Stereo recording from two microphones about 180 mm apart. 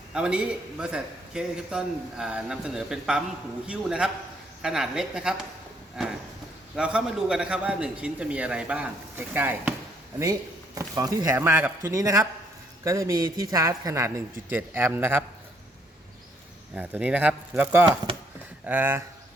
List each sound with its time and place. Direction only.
0.1 s a man's voice: 5° right (ahead or behind)
10.8 s a man's voice: 20° right (ahead or behind)
16.7 s a man's voice: 5° right (ahead or behind)